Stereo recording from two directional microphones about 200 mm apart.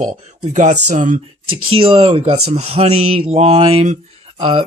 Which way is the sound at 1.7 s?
25° right (ahead or behind).